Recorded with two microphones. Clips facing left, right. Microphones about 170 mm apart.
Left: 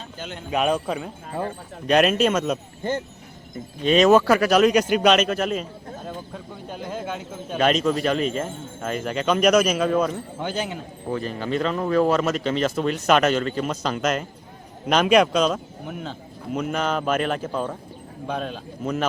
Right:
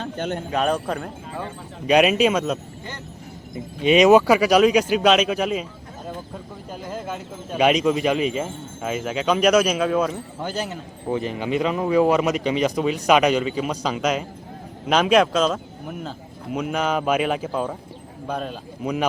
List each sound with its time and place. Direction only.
0.0 s speech: 55° right (ahead or behind)
0.5 s speech: 5° left (ahead or behind)
3.8 s speech: 15° right (ahead or behind)
6.7 s speech: centre (ahead or behind)
11.1 s speech: 15° right (ahead or behind)